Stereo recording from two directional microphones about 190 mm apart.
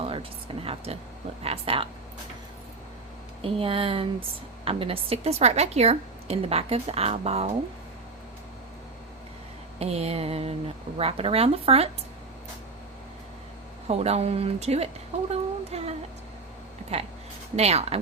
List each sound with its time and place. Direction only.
0.0 s a sound: 30° right (ahead or behind)
1.5 s speech: 30° right (ahead or behind)
3.4 s a woman's voice: 30° right (ahead or behind)
9.7 s a woman's voice: 35° right (ahead or behind)
13.8 s a woman's voice: 35° right (ahead or behind)